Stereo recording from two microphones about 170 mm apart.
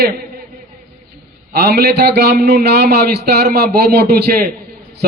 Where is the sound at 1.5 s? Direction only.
65° right (ahead or behind).